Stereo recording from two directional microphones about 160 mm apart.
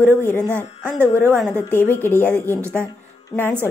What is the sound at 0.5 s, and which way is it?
Speech, 15° right (ahead or behind).